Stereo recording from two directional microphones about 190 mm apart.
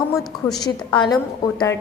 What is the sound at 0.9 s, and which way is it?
Speech, 25° left (ahead or behind).